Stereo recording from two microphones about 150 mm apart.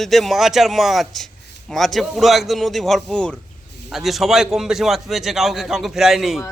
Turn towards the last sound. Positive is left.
turn(degrees=0)  # may be behind; listen again after turning